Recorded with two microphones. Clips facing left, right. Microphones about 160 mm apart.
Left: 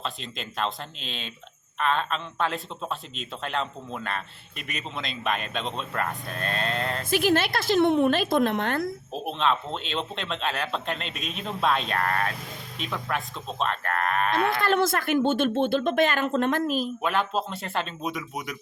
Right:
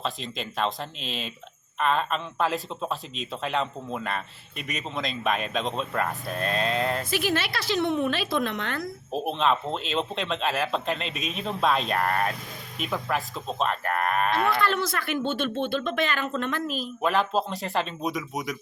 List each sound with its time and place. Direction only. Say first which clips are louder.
0.0 s speech: right 3 dB; centre (ahead or behind)
7.0 s speech: left 4 dB; 50° left (ahead or behind)
9.2 s speech: right 1 dB; centre (ahead or behind)
14.3 s speech: left 1 dB; 50° left (ahead or behind)
17.0 s speech: right 2 dB; centre (ahead or behind)